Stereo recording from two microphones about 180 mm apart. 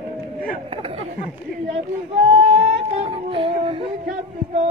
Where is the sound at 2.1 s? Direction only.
35° right (ahead or behind).